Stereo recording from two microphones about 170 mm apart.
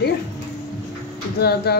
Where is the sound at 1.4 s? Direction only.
70° left (ahead or behind).